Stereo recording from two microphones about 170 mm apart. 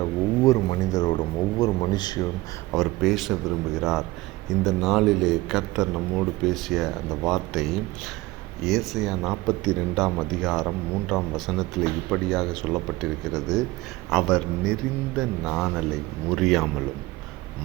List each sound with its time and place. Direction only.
0.0 s speech: 20° left (ahead or behind)
2.7 s speech: centre (ahead or behind)